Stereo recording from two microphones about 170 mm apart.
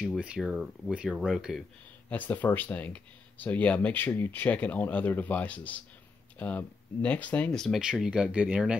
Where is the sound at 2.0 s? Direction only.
10° left (ahead or behind).